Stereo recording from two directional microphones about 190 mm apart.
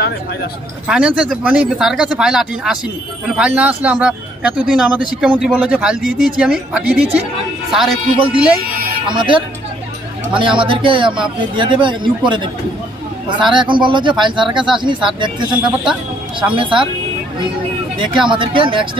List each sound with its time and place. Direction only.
0.8 s speech: 5° right (ahead or behind)
9.1 s speech: 25° right (ahead or behind)
17.9 s speech: 25° right (ahead or behind)